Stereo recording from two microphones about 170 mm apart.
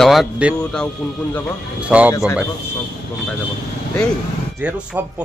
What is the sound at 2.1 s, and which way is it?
Speech, 20° left (ahead or behind).